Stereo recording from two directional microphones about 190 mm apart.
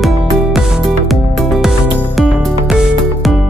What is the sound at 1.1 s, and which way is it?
Music, centre (ahead or behind).